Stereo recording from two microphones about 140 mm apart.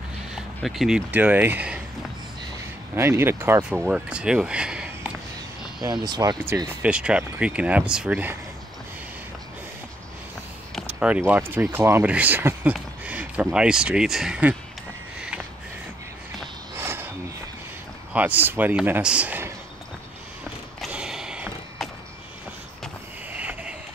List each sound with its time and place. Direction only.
0.6 s speech: centre (ahead or behind)
3.0 s speech: 15° right (ahead or behind)
5.8 s speech: 30° right (ahead or behind)
6.4 s speech: 20° right (ahead or behind)
6.9 s speech: 10° right (ahead or behind)
10.9 s speech: 10° right (ahead or behind)
15.1 s sniff: 5° right (ahead or behind)
16.7 s a sound: 15° right (ahead or behind)
18.1 s speech: 10° right (ahead or behind)
20.8 s a sound: 5° right (ahead or behind)
23.3 s a sound: 10° right (ahead or behind)